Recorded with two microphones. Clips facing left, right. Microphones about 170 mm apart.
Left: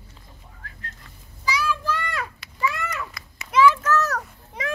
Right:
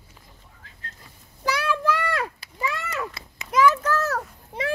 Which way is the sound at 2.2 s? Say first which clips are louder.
Left 2 dB; 35° right (ahead or behind).